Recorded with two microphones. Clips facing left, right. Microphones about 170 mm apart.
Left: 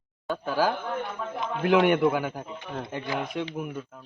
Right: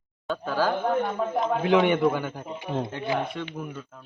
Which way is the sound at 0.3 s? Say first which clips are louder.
Even; 15° left (ahead or behind).